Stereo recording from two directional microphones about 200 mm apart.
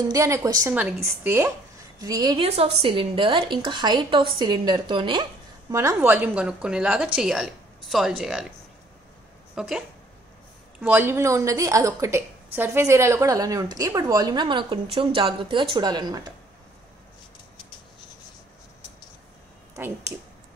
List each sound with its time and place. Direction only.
0.1 s a woman's voice: 15° right (ahead or behind)
2.3 s a woman's voice: 30° right (ahead or behind); by 8.5 s centre (ahead or behind)
9.6 s a woman's voice: 5° right (ahead or behind); by 16.3 s 20° right (ahead or behind)
19.7 s speech: 15° right (ahead or behind)